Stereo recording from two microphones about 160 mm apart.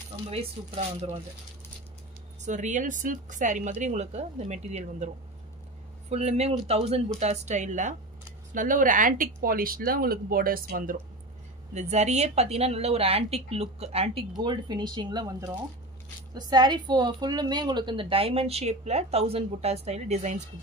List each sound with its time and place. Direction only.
0.3 s a woman's voice: 35° right (ahead or behind)
2.4 s a woman's voice: 50° right (ahead or behind); by 11.0 s 65° right (ahead or behind)
11.7 s a woman's voice: 45° right (ahead or behind)
14.3 s a woman's voice: 25° right (ahead or behind); by 20.4 s 45° right (ahead or behind)